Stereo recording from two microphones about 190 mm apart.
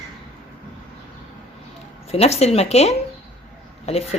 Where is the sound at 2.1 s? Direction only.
35° left (ahead or behind).